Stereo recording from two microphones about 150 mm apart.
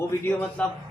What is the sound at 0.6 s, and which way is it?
Speech, 5° left (ahead or behind).